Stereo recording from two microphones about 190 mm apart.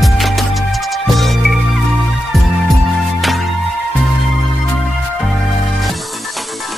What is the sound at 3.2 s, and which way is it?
Music, centre (ahead or behind).